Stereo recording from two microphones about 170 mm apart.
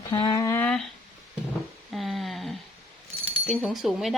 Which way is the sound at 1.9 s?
Centre (ahead or behind).